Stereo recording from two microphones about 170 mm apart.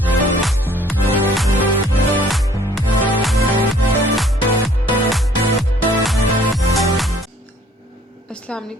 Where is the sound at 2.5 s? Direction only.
15° right (ahead or behind).